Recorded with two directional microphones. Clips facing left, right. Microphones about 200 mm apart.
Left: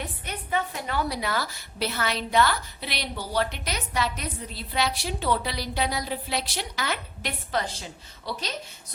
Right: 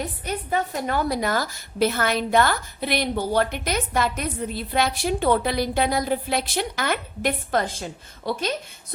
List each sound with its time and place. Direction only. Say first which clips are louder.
0.0 s a woman's voice: right 7 dB; 40° right (ahead or behind)